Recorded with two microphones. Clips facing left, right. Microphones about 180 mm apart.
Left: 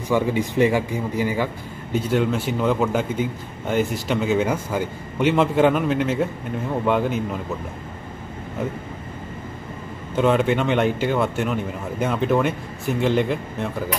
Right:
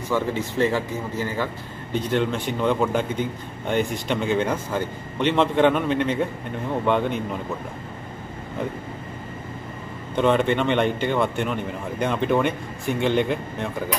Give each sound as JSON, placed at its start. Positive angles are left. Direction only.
{"t": 0.1, "sound": "a man's voice", "side_deg": 15}
{"t": 10.1, "sound": "a man's voice", "side_deg": 5}